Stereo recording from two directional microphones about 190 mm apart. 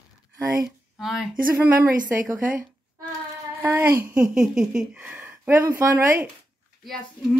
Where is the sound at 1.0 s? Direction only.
Centre (ahead or behind).